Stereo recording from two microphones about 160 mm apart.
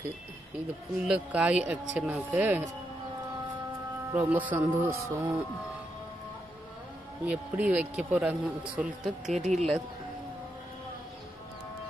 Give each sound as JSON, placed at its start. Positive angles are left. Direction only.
{"t": 1.0, "sound": "speech", "side_deg": -5}
{"t": 4.1, "sound": "speech", "side_deg": -10}
{"t": 7.2, "sound": "speech", "side_deg": -10}
{"t": 9.3, "sound": "speech", "side_deg": -45}